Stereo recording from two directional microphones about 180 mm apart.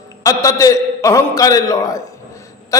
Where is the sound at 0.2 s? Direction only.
20° left (ahead or behind).